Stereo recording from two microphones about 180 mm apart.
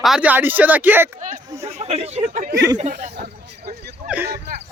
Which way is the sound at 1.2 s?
45° right (ahead or behind).